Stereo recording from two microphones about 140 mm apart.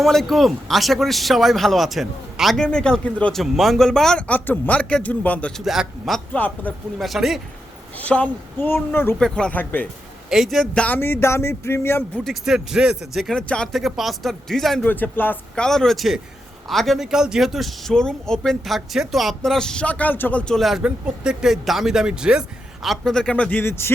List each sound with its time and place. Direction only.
0.0 s speech: centre (ahead or behind)
7.0 s speech: centre (ahead or behind)
7.9 s speech: 10° left (ahead or behind)
9.1 s speech: 5° left (ahead or behind)
10.2 s speech: centre (ahead or behind); by 12.2 s 15° left (ahead or behind)
12.2 s speech: centre (ahead or behind)
14.8 s speech: 10° left (ahead or behind)